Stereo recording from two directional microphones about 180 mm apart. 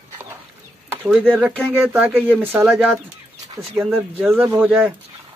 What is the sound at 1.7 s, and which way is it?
Speech, 10° right (ahead or behind).